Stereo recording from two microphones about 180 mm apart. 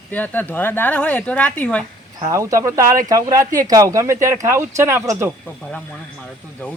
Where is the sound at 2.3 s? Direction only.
15° right (ahead or behind).